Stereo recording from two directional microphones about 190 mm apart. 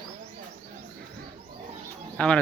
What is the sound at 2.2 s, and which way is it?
Speech, 5° left (ahead or behind).